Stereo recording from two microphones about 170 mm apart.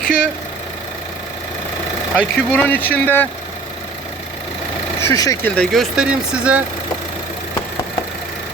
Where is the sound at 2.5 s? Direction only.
10° left (ahead or behind).